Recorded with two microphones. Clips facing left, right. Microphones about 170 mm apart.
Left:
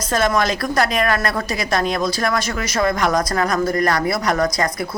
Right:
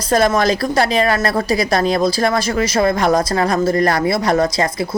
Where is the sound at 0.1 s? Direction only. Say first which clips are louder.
Right 4 dB; 35° right (ahead or behind).